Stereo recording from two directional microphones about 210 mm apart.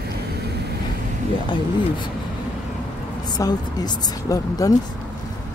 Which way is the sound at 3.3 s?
20° left (ahead or behind).